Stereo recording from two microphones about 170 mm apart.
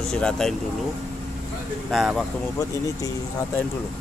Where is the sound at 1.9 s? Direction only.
Centre (ahead or behind).